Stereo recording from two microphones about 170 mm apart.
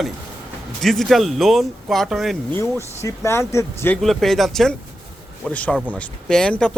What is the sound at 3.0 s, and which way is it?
Speech, 15° left (ahead or behind).